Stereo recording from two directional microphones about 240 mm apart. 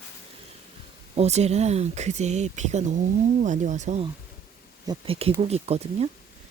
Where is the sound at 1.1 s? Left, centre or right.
Right.